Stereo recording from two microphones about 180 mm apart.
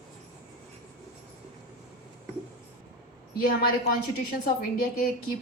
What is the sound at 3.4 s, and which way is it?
Speech, 55° left (ahead or behind).